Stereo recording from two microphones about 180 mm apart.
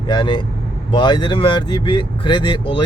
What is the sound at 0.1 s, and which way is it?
Speech, 25° left (ahead or behind).